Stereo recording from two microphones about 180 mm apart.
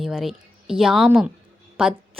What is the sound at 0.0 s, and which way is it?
A woman's voice, centre (ahead or behind).